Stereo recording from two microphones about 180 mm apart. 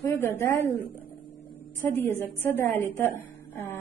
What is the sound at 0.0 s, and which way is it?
Speech, 15° left (ahead or behind).